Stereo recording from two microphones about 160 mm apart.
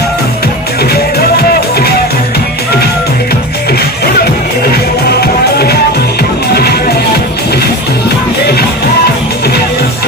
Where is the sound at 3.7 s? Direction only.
75° left (ahead or behind).